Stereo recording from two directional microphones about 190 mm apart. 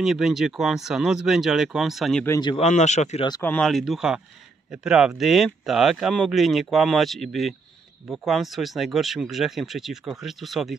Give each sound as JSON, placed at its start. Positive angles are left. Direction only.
{"t": 0.0, "sound": "speech", "side_deg": 0}
{"t": 2.2, "sound": "speech", "side_deg": 15}
{"t": 2.5, "sound": "speech", "side_deg": 35}
{"t": 3.4, "sound": "speech", "side_deg": 5}